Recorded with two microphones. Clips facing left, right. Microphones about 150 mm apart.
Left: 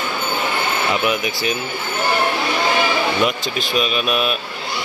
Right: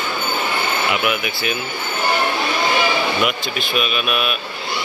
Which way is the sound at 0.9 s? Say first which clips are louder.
Left 1 dB; 35° left (ahead or behind).